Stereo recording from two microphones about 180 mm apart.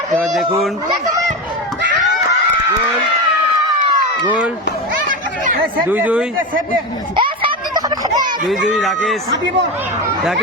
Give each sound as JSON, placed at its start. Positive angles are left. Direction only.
{"t": 0.1, "sound": "speech", "side_deg": 0}
{"t": 5.9, "sound": "speech", "side_deg": -10}
{"t": 7.2, "sound": "a sound", "side_deg": -25}
{"t": 8.7, "sound": "speech", "side_deg": 0}